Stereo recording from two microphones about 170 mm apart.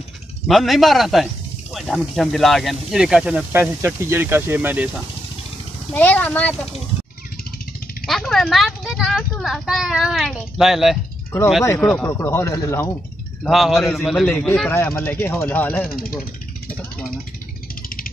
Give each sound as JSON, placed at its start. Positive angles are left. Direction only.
{"t": 0.5, "sound": "speech", "side_deg": 0}
{"t": 5.9, "sound": "speech", "side_deg": 10}
{"t": 8.1, "sound": "speech", "side_deg": 0}
{"t": 12.1, "sound": "speech", "side_deg": 15}
{"t": 13.4, "sound": "speech", "side_deg": 0}
{"t": 14.7, "sound": "speech", "side_deg": 15}
{"t": 17.8, "sound": "a sound", "side_deg": 55}